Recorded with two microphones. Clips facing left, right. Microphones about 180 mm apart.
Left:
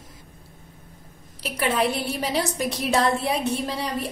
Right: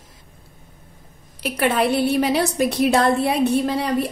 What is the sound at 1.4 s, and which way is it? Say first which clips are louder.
A woman's voice: right 4 dB; 60° right (ahead or behind).